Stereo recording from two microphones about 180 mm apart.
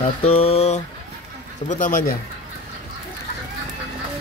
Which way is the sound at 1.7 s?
50° left (ahead or behind).